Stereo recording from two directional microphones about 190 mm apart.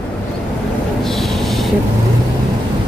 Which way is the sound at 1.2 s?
Centre (ahead or behind).